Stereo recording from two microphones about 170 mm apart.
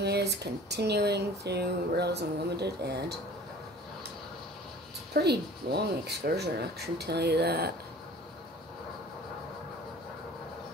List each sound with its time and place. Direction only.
0.0 s speech: 75° right (ahead or behind)
5.1 s speech: 75° right (ahead or behind)